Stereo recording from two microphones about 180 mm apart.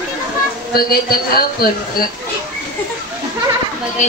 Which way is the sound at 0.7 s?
55° left (ahead or behind).